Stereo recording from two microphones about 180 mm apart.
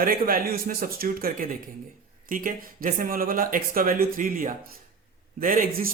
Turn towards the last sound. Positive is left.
turn(degrees=-55)  # may be behind; listen again after turning